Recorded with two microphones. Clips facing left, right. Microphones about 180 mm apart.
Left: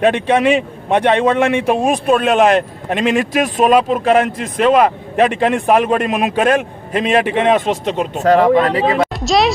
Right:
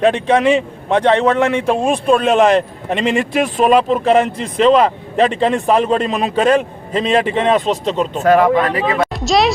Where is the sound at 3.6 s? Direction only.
5° left (ahead or behind).